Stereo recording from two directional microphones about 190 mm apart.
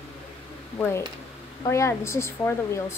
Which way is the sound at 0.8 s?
15° left (ahead or behind).